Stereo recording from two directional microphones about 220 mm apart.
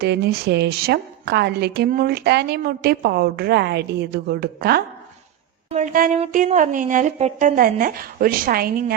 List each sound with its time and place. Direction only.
0.0 s a woman's voice: 45° right (ahead or behind)